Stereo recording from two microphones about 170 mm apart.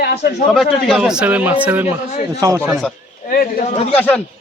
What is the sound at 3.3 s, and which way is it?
Speech, 55° left (ahead or behind).